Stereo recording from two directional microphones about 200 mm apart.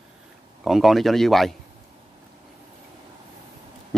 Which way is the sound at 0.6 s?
Centre (ahead or behind).